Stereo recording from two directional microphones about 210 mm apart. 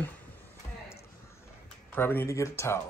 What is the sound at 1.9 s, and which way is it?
Speech, 10° left (ahead or behind).